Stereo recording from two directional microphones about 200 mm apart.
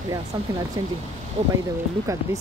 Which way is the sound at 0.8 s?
20° right (ahead or behind).